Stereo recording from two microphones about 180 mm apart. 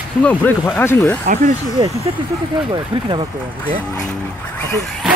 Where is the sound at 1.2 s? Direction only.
45° right (ahead or behind).